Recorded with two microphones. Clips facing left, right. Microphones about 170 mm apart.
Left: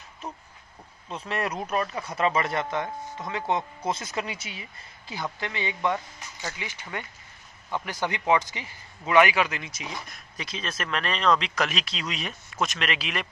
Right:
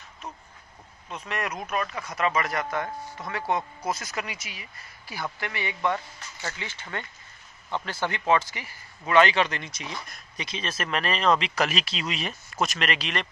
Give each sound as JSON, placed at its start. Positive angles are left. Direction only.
{"t": 1.0, "sound": "a man's voice", "side_deg": 30}